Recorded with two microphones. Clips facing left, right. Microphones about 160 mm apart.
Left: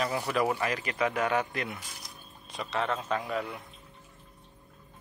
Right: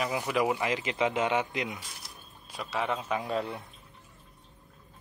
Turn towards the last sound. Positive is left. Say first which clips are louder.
# right 2 dB
turn(degrees=-30)  # may be behind; listen again after turning